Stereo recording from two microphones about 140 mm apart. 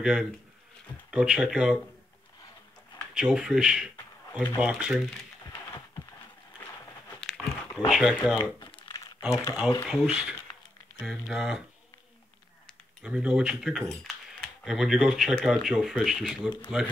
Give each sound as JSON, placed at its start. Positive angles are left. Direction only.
{"t": 0.0, "sound": "speech", "side_deg": -5}
{"t": 3.2, "sound": "speech", "side_deg": -5}
{"t": 6.6, "sound": "a sound", "side_deg": 20}
{"t": 7.2, "sound": "a sound", "side_deg": 5}
{"t": 7.9, "sound": "speech", "side_deg": 0}
{"t": 8.4, "sound": "crumpling", "side_deg": 35}
{"t": 9.8, "sound": "speech", "side_deg": -5}
{"t": 13.0, "sound": "speech", "side_deg": -5}